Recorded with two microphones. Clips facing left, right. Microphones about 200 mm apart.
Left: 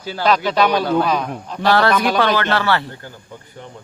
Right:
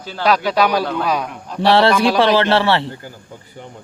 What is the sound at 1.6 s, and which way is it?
A man's voice, 25° right (ahead or behind).